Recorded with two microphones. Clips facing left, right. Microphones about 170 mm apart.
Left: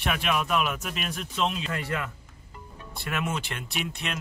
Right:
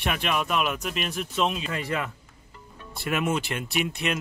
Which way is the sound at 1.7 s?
20° right (ahead or behind).